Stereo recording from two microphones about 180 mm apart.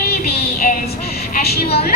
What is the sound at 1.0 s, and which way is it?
Speech, 60° left (ahead or behind).